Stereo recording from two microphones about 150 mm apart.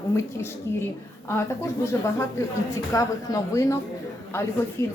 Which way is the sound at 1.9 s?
20° left (ahead or behind).